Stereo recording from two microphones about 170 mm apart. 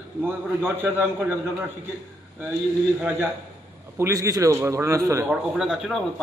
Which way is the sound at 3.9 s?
15° right (ahead or behind).